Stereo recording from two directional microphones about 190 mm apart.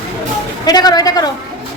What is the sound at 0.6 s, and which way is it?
Speech, 20° left (ahead or behind).